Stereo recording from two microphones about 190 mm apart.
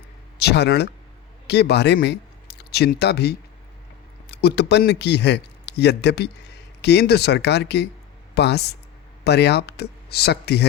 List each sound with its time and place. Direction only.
0.3 s a man's voice: 60° left (ahead or behind)